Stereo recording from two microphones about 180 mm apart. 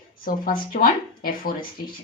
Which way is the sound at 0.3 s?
50° left (ahead or behind).